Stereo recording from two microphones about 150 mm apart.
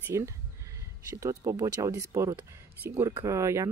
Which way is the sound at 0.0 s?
20° right (ahead or behind).